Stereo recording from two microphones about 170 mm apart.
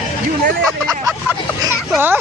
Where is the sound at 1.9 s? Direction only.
10° right (ahead or behind).